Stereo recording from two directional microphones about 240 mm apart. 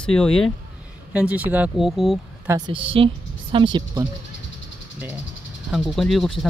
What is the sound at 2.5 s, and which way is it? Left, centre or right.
A woman's voice, centre.